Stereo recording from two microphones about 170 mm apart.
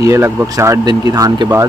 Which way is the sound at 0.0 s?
15° right (ahead or behind).